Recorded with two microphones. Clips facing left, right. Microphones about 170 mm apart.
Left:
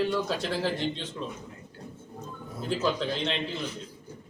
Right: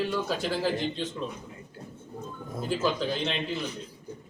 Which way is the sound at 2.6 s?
Centre (ahead or behind).